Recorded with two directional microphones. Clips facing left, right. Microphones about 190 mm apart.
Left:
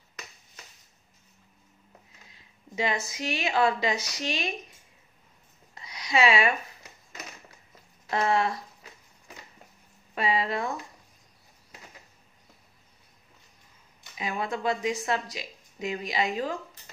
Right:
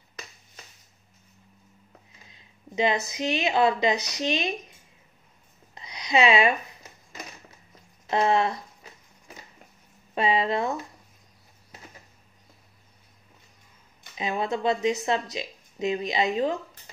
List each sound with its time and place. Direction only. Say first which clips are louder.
2.7 s speech: right 5 dB; 20° right (ahead or behind)
5.8 s a sound: right 2 dB; 20° right (ahead or behind)
8.1 s speech: right 3 dB; 25° right (ahead or behind)
10.1 s speech: right 4 dB; 25° right (ahead or behind)
14.1 s speech: right 4 dB; 25° right (ahead or behind)